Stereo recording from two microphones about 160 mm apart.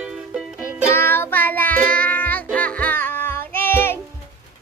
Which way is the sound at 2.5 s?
10° left (ahead or behind).